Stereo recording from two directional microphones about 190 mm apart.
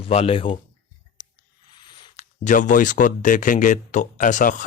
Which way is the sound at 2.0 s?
40° left (ahead or behind).